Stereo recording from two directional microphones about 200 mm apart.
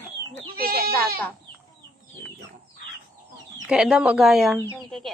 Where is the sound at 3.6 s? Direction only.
5° right (ahead or behind).